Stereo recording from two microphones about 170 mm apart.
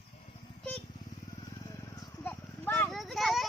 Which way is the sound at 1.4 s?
20° left (ahead or behind).